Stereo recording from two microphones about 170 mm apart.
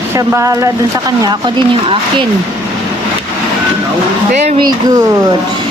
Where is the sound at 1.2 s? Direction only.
30° right (ahead or behind).